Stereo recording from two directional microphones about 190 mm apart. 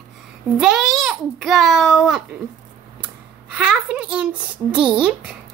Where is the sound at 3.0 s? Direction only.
5° right (ahead or behind).